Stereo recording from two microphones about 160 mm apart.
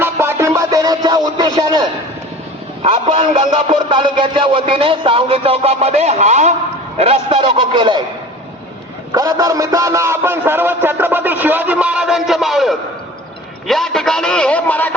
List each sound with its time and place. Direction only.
0.0 s music: 15° right (ahead or behind)
2.8 s a man's voice: 35° right (ahead or behind)
9.1 s a man's voice: 20° right (ahead or behind); by 14.9 s 10° left (ahead or behind)